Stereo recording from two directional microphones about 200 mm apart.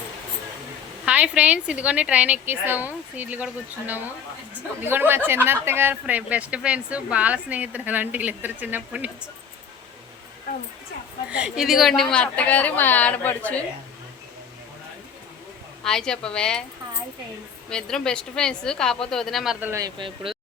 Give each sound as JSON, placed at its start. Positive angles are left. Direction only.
{"t": 1.0, "sound": "speech", "side_deg": -5}
{"t": 11.3, "sound": "a woman's voice", "side_deg": -5}
{"t": 15.8, "sound": "a woman's voice", "side_deg": 5}
{"t": 17.7, "sound": "a woman's voice", "side_deg": 5}